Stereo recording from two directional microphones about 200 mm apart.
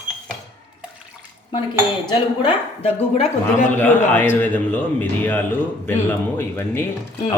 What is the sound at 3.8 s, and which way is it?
A man's voice, 10° left (ahead or behind).